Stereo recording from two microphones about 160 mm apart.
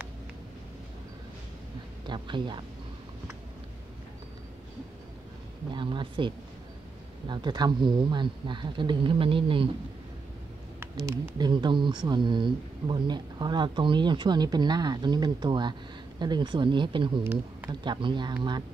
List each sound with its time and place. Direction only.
2.0 s speech: 30° right (ahead or behind)
5.7 s speech: 30° right (ahead or behind)
10.8 s speech: 15° right (ahead or behind)
17.2 s speech: 10° right (ahead or behind)
17.6 s speech: 30° right (ahead or behind)